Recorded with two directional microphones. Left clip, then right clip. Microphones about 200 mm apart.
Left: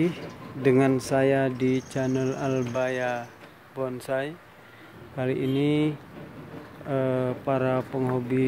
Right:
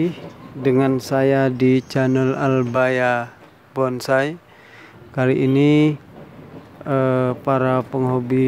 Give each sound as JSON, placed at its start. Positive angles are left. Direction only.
{"t": 0.6, "sound": "speech", "side_deg": -10}